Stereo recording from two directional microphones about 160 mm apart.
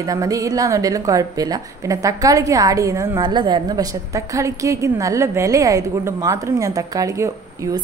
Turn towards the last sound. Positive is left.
turn(degrees=-20)  # may be behind; listen again after turning